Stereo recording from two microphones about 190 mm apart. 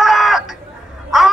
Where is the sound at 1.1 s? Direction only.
Centre (ahead or behind).